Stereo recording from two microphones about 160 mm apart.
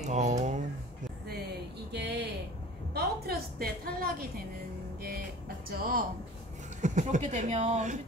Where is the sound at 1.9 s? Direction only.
90° right.